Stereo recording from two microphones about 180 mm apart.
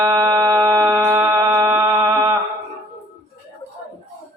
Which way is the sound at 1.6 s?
20° right (ahead or behind).